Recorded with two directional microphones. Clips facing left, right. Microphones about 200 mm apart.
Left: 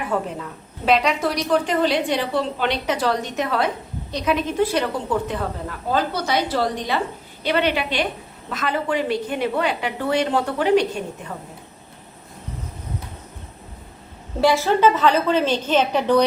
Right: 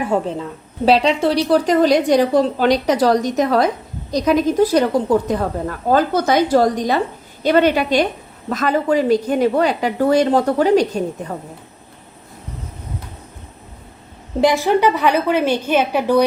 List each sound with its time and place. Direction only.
0.0 s a woman's voice: 30° right (ahead or behind)
14.4 s a woman's voice: 15° right (ahead or behind)